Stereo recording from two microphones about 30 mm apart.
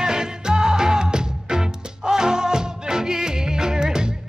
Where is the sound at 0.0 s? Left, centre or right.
Right.